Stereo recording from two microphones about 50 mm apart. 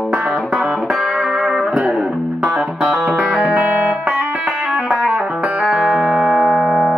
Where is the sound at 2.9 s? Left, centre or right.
Right.